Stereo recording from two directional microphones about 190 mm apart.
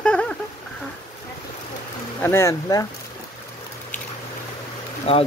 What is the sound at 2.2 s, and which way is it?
Speech, 15° left (ahead or behind).